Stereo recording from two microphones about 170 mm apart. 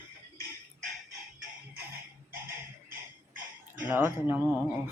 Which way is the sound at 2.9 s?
55° right (ahead or behind).